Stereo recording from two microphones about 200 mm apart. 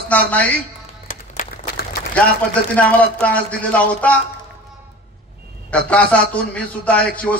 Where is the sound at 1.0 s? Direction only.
40° left (ahead or behind).